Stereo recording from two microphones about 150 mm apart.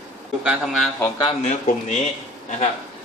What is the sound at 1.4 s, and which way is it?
Speech, 50° left (ahead or behind).